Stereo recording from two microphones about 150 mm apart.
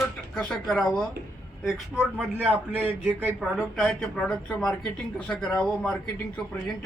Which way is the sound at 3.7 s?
5° left (ahead or behind).